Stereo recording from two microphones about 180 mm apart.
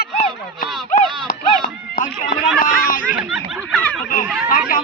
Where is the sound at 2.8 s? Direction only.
50° left (ahead or behind).